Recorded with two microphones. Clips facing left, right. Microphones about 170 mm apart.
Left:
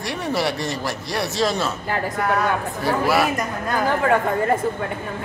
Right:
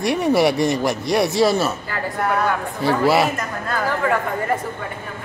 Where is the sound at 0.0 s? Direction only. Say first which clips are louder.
Right 7 dB; 15° right (ahead or behind).